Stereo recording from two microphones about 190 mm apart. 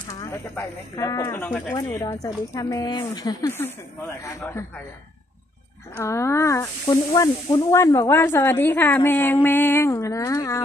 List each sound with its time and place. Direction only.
0.1 s speech: 15° left (ahead or behind)
5.9 s speech: 15° left (ahead or behind)